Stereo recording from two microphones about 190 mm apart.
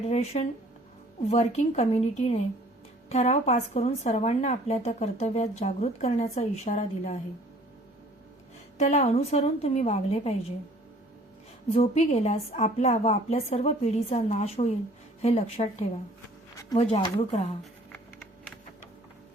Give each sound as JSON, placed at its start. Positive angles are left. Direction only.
{"t": 0.1, "sound": "speech", "side_deg": 35}
{"t": 8.8, "sound": "speech", "side_deg": 35}
{"t": 11.7, "sound": "speech", "side_deg": 35}
{"t": 17.6, "sound": "a sound", "side_deg": 5}